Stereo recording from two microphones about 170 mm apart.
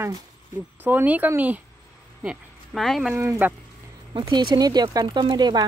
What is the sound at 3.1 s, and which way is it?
Speech, 15° right (ahead or behind).